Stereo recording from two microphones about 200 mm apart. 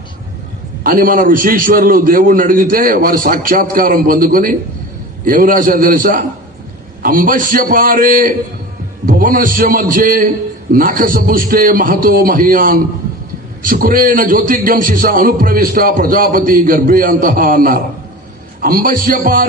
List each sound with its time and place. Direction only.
0.9 s a man's voice: 45° right (ahead or behind)